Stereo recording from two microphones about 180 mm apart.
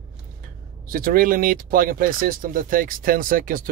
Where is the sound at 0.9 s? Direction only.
55° right (ahead or behind).